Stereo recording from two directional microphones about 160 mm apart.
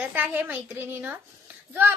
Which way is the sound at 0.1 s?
10° right (ahead or behind).